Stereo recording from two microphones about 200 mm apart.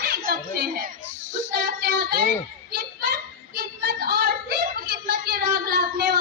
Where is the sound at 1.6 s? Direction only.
55° right (ahead or behind).